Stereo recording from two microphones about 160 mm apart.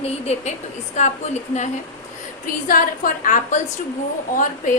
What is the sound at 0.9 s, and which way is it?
A woman's voice, 50° left (ahead or behind).